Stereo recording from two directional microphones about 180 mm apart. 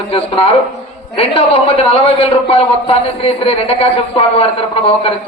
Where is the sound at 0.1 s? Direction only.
30° left (ahead or behind).